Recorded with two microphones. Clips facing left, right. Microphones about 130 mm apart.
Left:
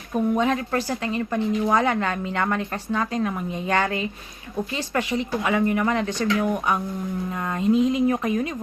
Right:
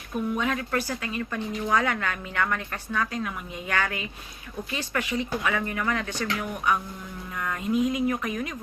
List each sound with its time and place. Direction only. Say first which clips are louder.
0.3 s speech: left 5 dB; 30° left (ahead or behind)